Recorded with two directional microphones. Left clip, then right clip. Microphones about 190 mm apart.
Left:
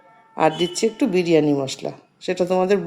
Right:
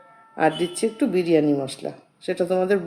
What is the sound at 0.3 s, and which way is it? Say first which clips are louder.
Speech: left 2 dB; 10° left (ahead or behind).